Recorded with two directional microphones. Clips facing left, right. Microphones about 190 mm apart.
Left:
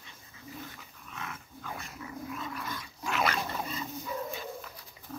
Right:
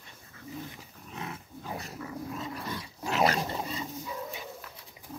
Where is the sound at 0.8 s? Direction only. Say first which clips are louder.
Right 3 dB; 35° right (ahead or behind).